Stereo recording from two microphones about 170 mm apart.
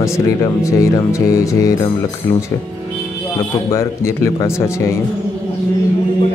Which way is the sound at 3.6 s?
15° left (ahead or behind).